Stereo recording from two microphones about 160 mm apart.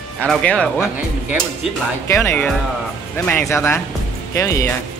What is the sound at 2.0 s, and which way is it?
Speech, 15° left (ahead or behind).